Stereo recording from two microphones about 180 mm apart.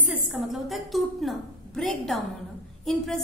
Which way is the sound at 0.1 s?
5° right (ahead or behind).